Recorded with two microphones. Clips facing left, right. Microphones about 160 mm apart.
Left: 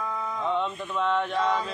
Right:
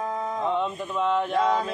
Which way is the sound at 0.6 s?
5° right (ahead or behind).